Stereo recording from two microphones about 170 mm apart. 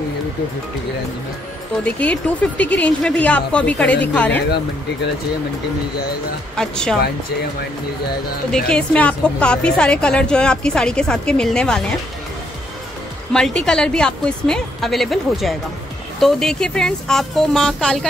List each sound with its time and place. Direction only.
1.9 s speech: 10° left (ahead or behind)
6.5 s a woman's voice: 5° left (ahead or behind)
8.6 s a woman's voice: 5° left (ahead or behind)
13.3 s a woman's voice: 5° left (ahead or behind)